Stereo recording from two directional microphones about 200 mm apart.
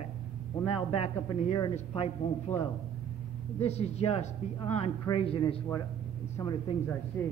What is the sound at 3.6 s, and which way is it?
Speech, 30° left (ahead or behind).